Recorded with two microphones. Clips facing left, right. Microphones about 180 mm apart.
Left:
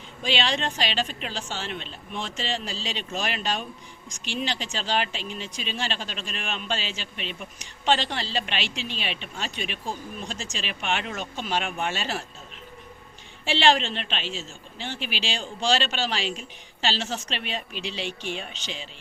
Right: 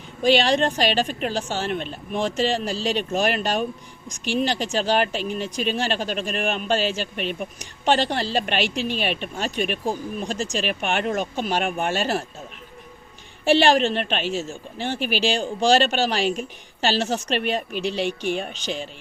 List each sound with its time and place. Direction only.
0.2 s speech: 45° right (ahead or behind)
13.4 s speech: 50° right (ahead or behind)